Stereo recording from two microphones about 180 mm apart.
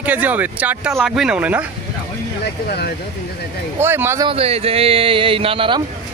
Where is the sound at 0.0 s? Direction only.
10° right (ahead or behind).